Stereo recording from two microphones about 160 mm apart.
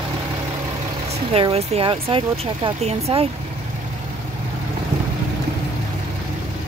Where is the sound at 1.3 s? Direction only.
40° right (ahead or behind).